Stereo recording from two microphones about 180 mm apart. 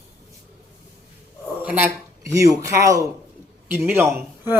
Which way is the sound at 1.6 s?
10° right (ahead or behind).